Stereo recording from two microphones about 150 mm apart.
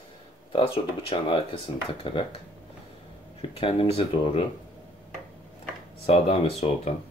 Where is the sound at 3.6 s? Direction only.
40° left (ahead or behind).